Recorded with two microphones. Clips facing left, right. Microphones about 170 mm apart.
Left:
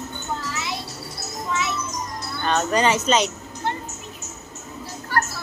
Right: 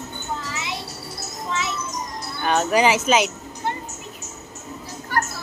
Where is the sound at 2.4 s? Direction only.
10° right (ahead or behind).